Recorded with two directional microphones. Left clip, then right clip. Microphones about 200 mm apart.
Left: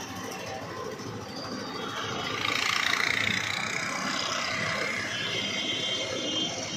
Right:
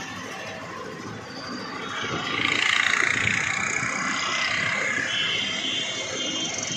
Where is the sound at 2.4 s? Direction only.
50° left (ahead or behind).